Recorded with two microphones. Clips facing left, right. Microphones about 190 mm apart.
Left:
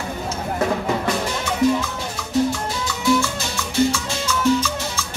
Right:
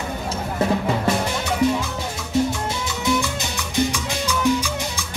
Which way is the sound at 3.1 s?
15° right (ahead or behind).